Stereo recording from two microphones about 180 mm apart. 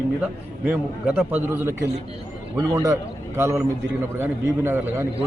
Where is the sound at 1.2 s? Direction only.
10° right (ahead or behind).